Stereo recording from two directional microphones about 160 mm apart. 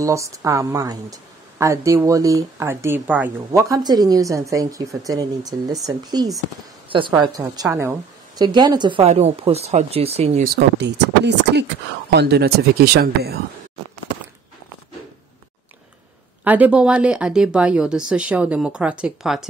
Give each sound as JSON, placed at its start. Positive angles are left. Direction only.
{"t": 0.0, "sound": "a woman's voice", "side_deg": -20}
{"t": 3.6, "sound": "a woman's voice", "side_deg": -25}
{"t": 7.8, "sound": "a sound", "side_deg": -15}
{"t": 8.5, "sound": "speech", "side_deg": -25}
{"t": 10.4, "sound": "speech", "side_deg": -80}
{"t": 16.4, "sound": "speech", "side_deg": -10}